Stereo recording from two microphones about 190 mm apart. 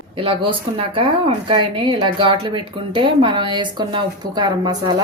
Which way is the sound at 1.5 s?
25° right (ahead or behind).